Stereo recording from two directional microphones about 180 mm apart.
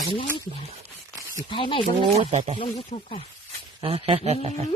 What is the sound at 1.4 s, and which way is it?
Chopping, 30° left (ahead or behind).